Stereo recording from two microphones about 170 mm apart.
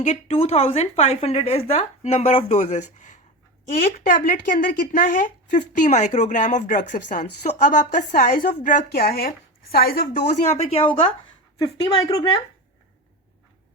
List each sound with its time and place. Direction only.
0.0 s speech: 40° left (ahead or behind)
3.8 s speech: 55° left (ahead or behind); by 10.8 s 40° left (ahead or behind)
11.6 s speech: 25° left (ahead or behind)